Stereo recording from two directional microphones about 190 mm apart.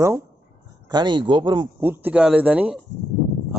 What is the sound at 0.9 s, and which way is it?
Speech, 25° right (ahead or behind).